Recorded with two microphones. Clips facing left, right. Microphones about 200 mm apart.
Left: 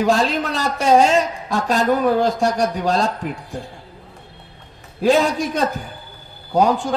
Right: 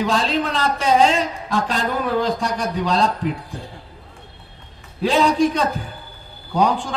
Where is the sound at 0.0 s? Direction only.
45° left (ahead or behind).